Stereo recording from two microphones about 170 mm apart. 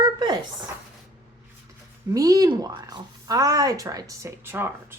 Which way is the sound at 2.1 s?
20° right (ahead or behind).